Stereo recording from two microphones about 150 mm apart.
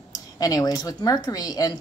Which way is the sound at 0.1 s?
25° left (ahead or behind).